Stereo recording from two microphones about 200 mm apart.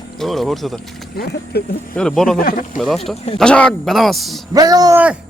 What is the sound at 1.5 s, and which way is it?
Speech, 55° left (ahead or behind).